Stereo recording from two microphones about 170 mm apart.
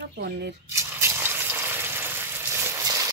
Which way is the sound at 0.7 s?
15° right (ahead or behind).